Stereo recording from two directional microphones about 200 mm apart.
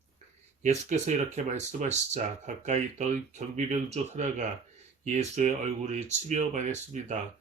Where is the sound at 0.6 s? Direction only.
35° right (ahead or behind).